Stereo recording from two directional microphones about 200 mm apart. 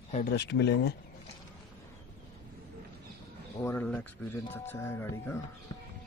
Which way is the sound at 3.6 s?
5° left (ahead or behind).